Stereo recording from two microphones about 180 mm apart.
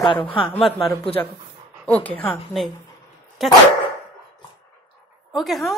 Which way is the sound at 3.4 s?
Centre (ahead or behind).